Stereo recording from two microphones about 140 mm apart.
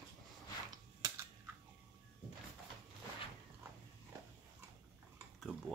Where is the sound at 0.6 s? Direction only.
25° right (ahead or behind).